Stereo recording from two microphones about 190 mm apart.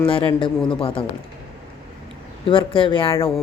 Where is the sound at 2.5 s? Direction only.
25° left (ahead or behind).